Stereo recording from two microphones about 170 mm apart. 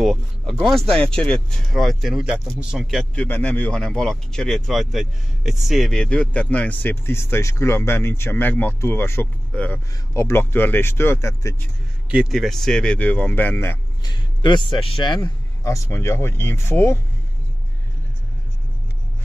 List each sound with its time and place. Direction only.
0.0 s speech: centre (ahead or behind)
12.1 s speech: 5° right (ahead or behind)
14.0 s speech: 25° left (ahead or behind)